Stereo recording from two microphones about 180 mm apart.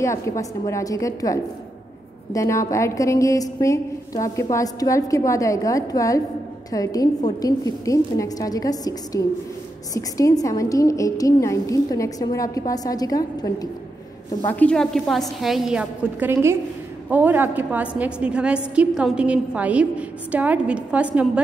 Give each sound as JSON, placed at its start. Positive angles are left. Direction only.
{"t": 0.0, "sound": "a woman's voice", "side_deg": 15}
{"t": 14.4, "sound": "a woman's voice", "side_deg": 10}